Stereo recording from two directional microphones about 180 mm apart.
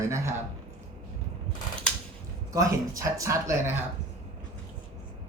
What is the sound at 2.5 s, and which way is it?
Speech, 20° right (ahead or behind).